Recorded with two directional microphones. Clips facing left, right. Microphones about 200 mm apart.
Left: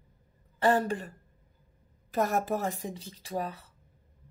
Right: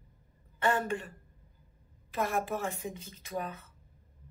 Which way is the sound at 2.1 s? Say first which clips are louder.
Left 4 dB; 40° left (ahead or behind).